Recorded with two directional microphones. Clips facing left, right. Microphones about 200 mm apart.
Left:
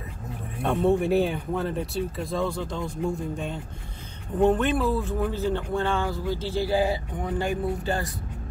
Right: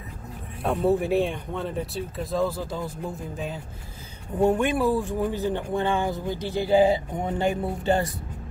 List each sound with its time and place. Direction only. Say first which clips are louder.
0.6 s speech: even; centre (ahead or behind); by 8.0 s 25° right (ahead or behind)